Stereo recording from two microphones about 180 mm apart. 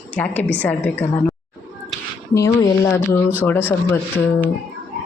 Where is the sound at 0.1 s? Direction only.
10° left (ahead or behind).